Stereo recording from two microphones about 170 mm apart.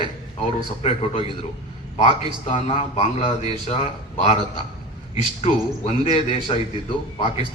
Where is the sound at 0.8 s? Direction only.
35° left (ahead or behind).